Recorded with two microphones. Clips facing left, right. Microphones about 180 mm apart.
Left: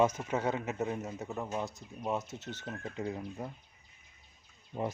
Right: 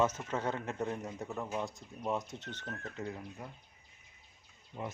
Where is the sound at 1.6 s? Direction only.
Centre (ahead or behind); by 3.5 s 20° left (ahead or behind).